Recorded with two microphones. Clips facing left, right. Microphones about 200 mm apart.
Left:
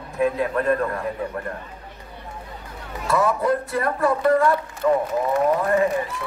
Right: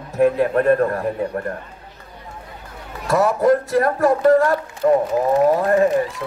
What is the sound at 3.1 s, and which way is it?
A man's voice, 45° right (ahead or behind).